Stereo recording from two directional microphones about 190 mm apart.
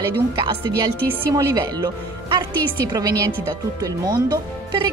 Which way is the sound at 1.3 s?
20° right (ahead or behind).